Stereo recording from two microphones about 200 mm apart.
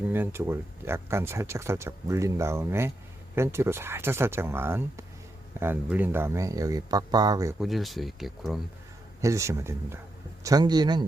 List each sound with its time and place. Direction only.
0.1 s speech: 10° right (ahead or behind)
7.6 s speech: centre (ahead or behind)
9.2 s a man's voice: 15° right (ahead or behind)